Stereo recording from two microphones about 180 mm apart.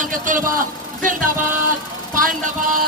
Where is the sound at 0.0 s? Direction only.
45° right (ahead or behind).